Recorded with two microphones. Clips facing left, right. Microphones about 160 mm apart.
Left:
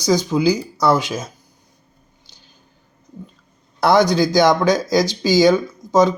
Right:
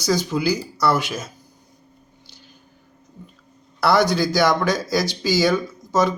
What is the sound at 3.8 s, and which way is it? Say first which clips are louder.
Speech: left 3 dB; 15° left (ahead or behind).